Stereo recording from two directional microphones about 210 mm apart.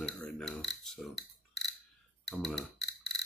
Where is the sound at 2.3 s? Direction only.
Centre (ahead or behind).